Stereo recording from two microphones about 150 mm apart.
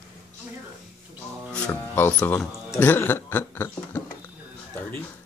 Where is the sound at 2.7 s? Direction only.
15° left (ahead or behind).